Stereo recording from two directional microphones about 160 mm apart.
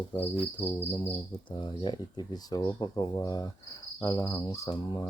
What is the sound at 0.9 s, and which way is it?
Speech, 30° left (ahead or behind).